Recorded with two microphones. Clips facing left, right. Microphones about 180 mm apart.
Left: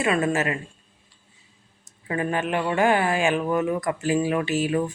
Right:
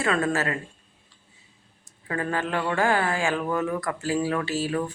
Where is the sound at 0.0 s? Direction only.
20° left (ahead or behind).